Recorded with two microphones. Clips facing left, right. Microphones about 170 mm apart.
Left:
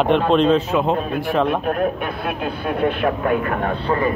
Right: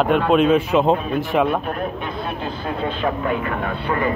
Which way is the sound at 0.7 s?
20° right (ahead or behind).